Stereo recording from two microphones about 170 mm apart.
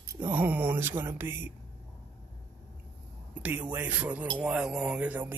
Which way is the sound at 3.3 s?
10° right (ahead or behind).